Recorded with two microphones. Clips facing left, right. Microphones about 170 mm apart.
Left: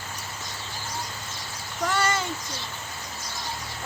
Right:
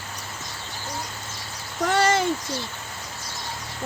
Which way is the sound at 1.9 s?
60° right (ahead or behind).